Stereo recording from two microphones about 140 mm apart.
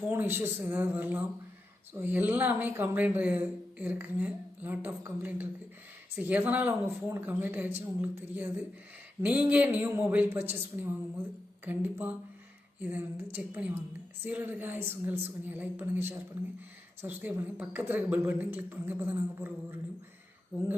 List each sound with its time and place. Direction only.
0.1 s speech: 15° right (ahead or behind)
20.5 s speech: 15° right (ahead or behind)